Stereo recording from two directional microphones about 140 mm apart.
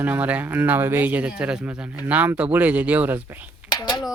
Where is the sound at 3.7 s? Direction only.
30° left (ahead or behind).